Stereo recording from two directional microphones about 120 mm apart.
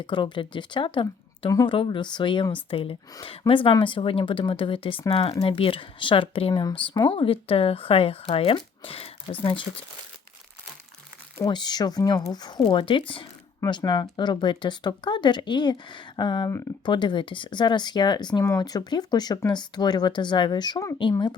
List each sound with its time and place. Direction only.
0.0 s speech: 40° left (ahead or behind)
6.5 s speech: 35° left (ahead or behind)
11.4 s speech: 35° left (ahead or behind)